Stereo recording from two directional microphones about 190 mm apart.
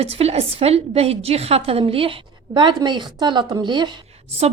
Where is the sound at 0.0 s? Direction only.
30° right (ahead or behind).